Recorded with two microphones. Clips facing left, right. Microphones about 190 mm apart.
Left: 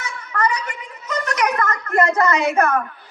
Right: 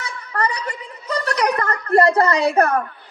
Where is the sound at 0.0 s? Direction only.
35° right (ahead or behind).